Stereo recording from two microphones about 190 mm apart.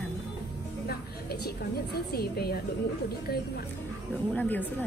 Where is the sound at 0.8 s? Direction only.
55° left (ahead or behind).